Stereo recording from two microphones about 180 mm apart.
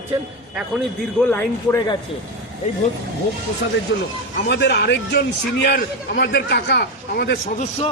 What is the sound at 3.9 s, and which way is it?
Speech, 85° left.